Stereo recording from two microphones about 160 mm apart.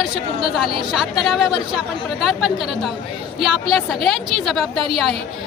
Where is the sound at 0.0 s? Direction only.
Centre (ahead or behind).